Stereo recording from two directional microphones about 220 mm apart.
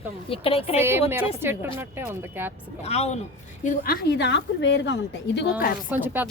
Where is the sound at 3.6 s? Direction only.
40° left (ahead or behind).